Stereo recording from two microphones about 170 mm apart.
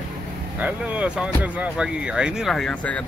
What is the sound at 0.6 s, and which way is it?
Speech, 10° right (ahead or behind).